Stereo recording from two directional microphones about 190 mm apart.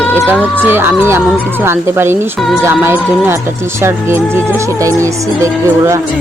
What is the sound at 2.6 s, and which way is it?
Speech, 15° right (ahead or behind).